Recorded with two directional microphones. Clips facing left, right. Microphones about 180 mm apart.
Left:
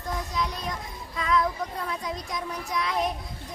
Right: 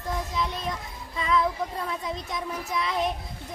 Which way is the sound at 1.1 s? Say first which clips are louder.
Even; centre (ahead or behind).